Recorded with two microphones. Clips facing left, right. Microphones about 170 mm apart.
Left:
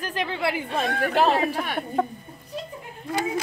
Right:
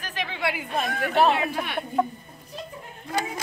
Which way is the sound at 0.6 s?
30° left (ahead or behind).